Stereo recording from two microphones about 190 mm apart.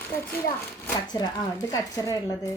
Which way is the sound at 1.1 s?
20° left (ahead or behind).